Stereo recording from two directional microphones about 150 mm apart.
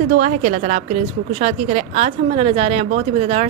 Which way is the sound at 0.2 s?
55° right (ahead or behind).